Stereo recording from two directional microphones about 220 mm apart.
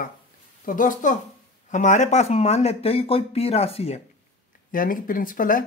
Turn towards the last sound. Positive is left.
turn(degrees=40)  # may be behind; listen again after turning